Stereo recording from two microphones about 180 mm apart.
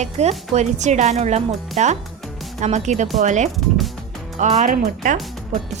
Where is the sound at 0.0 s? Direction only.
40° right (ahead or behind).